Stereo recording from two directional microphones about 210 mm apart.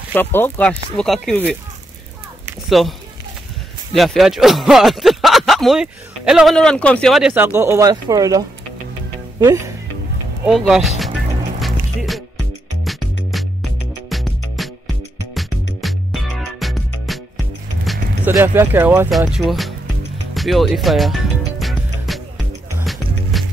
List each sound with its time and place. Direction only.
0.1 s speech: 10° left (ahead or behind)
2.8 s speech: centre (ahead or behind); by 9.8 s 15° right (ahead or behind)
10.4 s speech: centre (ahead or behind)
11.6 s music: centre (ahead or behind)
13.3 s music: centre (ahead or behind)
18.3 s speech: 10° right (ahead or behind)
20.3 s music: centre (ahead or behind)
23.3 s music: centre (ahead or behind)